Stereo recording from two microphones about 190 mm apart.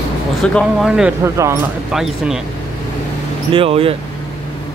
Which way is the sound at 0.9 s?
10° right (ahead or behind).